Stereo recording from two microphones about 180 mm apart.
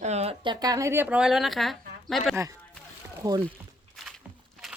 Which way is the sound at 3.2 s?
20° right (ahead or behind).